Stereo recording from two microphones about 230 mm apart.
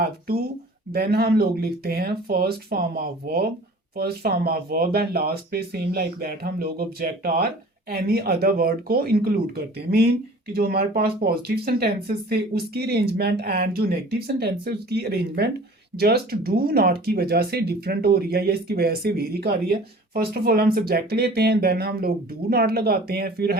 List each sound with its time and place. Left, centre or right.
0.0 s speech: right